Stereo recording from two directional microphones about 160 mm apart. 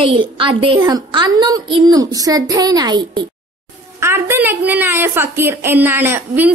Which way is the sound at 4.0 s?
15° right (ahead or behind).